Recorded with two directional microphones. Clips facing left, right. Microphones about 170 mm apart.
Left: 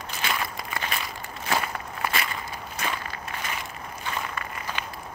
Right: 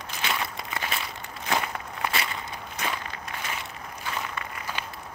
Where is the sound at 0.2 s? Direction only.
20° right (ahead or behind).